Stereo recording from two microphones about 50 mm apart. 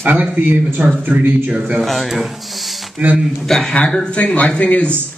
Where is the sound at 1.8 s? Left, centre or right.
Centre.